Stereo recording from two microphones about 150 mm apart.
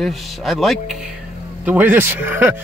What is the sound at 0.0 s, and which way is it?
Speech, centre (ahead or behind).